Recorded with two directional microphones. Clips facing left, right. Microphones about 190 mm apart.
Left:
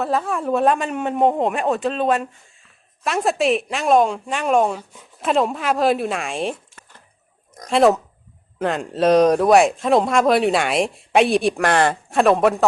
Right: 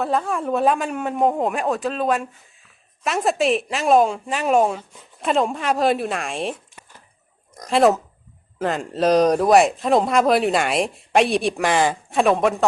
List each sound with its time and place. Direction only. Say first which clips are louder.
0.0 s speech: even; centre (ahead or behind)